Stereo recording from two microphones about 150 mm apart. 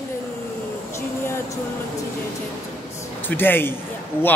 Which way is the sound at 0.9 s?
20° left (ahead or behind).